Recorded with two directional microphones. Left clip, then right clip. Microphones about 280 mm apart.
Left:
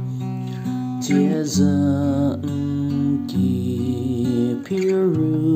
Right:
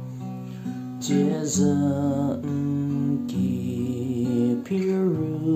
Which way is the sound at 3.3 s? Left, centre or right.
Left.